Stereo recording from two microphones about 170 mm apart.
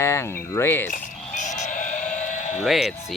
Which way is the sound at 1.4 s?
45° left (ahead or behind).